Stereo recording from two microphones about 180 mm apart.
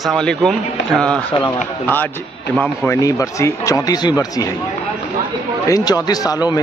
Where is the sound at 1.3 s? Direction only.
30° left (ahead or behind).